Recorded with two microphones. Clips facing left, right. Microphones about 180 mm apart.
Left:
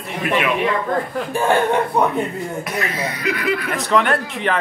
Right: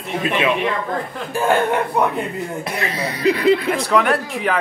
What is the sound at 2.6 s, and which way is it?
Speech, 30° right (ahead or behind).